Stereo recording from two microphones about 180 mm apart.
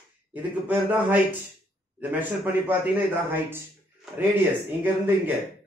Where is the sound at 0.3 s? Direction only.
10° right (ahead or behind).